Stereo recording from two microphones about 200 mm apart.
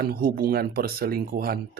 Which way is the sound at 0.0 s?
45° right (ahead or behind).